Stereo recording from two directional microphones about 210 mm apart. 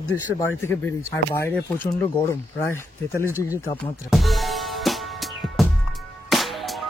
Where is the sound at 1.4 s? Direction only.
10° left (ahead or behind).